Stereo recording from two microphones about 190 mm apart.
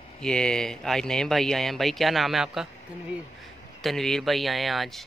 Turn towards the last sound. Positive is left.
turn(degrees=0)  # may be behind; listen again after turning